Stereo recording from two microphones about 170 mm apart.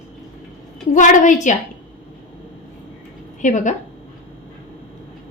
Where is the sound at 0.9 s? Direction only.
45° left (ahead or behind).